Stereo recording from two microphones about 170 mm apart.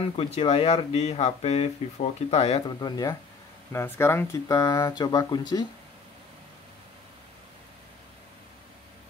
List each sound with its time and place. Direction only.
0.0 s speech: 35° left (ahead or behind)
2.8 s speech: 20° left (ahead or behind)